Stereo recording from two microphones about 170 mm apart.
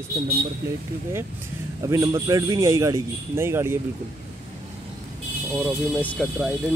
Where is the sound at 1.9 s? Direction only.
15° right (ahead or behind).